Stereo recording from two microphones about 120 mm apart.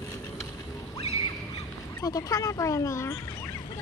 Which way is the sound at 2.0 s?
30° left (ahead or behind).